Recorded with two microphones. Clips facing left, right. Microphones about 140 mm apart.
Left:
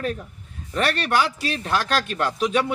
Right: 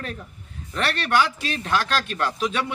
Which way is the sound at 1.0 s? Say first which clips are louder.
Even; 5° left (ahead or behind).